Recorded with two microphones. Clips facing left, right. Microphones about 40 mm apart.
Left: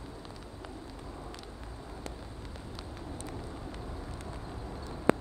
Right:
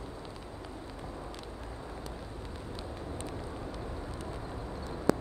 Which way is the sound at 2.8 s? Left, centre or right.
Right.